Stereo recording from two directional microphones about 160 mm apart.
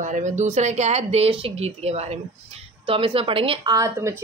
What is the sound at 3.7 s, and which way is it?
Speech, 20° right (ahead or behind).